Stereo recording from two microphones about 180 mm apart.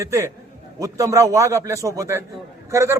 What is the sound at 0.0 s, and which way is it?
Speech, 15° right (ahead or behind).